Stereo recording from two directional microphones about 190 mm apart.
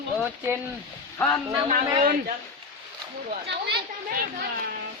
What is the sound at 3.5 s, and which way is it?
Speech, 60° right (ahead or behind).